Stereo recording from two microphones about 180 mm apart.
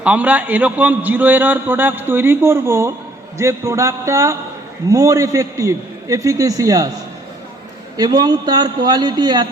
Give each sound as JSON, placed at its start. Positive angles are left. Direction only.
{"t": 0.0, "sound": "a man's voice", "side_deg": -10}
{"t": 7.9, "sound": "a man's voice", "side_deg": -20}